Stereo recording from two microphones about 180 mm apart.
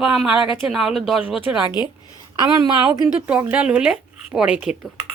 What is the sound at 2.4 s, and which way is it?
Speech, 20° right (ahead or behind).